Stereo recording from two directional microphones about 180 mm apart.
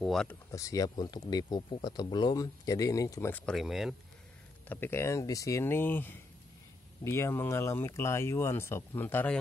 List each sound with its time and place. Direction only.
0.0 s speech: centre (ahead or behind)
0.5 s speech: 20° left (ahead or behind); by 3.9 s centre (ahead or behind)
4.6 s speech: 10° left (ahead or behind)